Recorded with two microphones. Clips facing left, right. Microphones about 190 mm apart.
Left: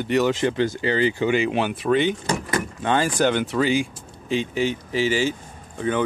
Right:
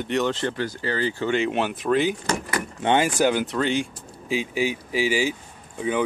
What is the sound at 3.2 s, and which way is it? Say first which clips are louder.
Speech: left 1 dB; 5° right (ahead or behind).